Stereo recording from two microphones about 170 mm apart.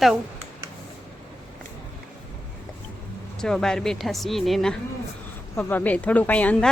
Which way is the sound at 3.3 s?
5° left (ahead or behind).